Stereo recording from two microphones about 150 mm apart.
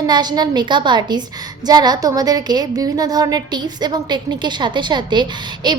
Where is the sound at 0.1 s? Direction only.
30° right (ahead or behind).